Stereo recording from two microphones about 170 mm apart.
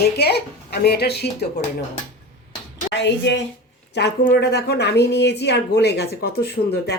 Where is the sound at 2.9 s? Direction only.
90° left.